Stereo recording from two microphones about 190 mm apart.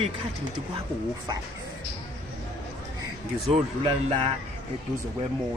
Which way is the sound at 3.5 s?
30° right (ahead or behind).